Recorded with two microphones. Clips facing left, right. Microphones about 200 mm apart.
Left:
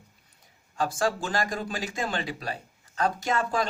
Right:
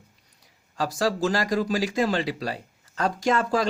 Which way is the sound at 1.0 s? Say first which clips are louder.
Right 5 dB; 40° right (ahead or behind).